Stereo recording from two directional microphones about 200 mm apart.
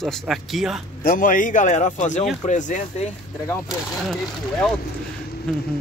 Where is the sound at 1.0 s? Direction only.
45° left (ahead or behind).